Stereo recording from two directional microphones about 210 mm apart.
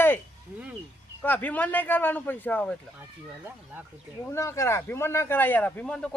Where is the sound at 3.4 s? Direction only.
10° right (ahead or behind).